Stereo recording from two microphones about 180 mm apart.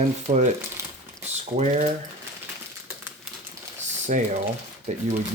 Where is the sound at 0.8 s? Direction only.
15° right (ahead or behind).